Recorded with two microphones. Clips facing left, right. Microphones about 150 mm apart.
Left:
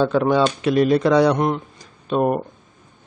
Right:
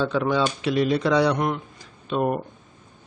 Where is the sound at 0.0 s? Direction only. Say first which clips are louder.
Left 5 dB; 45° left (ahead or behind).